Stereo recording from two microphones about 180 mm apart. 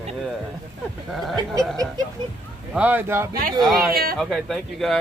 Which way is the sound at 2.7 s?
10° right (ahead or behind).